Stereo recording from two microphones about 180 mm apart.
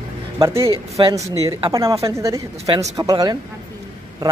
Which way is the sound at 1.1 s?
15° right (ahead or behind).